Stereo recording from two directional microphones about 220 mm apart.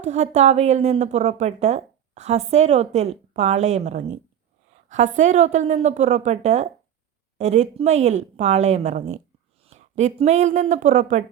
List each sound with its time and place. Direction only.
0.0 s a woman's voice: 30° right (ahead or behind)